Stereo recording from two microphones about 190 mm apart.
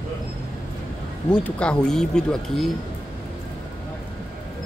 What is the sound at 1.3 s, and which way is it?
Speech, 5° left (ahead or behind).